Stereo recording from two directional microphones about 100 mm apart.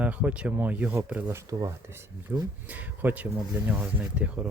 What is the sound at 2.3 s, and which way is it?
Speech, 15° right (ahead or behind).